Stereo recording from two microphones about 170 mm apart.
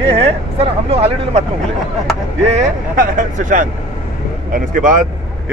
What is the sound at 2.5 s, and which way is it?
Speech, 45° right (ahead or behind).